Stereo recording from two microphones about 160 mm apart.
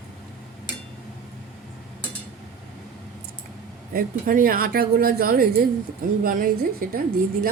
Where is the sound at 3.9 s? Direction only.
65° right (ahead or behind).